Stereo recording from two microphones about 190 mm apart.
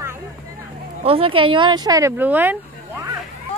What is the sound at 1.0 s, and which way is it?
Speech, 30° right (ahead or behind).